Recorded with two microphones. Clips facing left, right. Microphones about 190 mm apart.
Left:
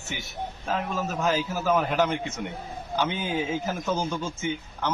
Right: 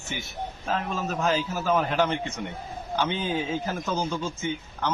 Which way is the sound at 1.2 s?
5° left (ahead or behind).